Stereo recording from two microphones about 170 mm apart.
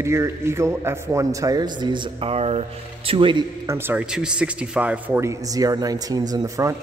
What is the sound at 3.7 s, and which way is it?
Speech, 10° right (ahead or behind).